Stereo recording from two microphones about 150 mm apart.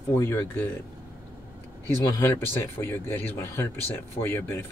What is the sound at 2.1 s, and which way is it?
Speech, 20° left (ahead or behind).